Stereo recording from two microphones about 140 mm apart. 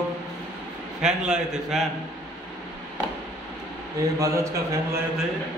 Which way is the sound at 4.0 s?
20° right (ahead or behind).